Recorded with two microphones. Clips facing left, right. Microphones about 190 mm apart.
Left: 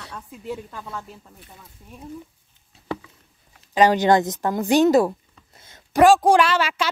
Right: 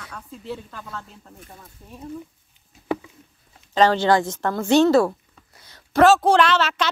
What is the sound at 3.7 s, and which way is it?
A woman's voice, 15° left (ahead or behind).